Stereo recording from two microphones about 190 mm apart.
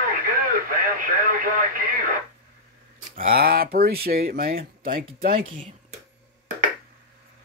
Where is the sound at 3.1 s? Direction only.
50° right (ahead or behind).